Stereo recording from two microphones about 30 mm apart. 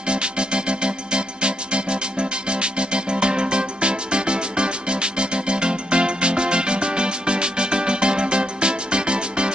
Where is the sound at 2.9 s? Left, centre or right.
Right.